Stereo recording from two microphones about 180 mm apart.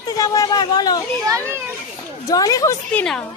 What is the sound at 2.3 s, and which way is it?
Speech, 20° left (ahead or behind).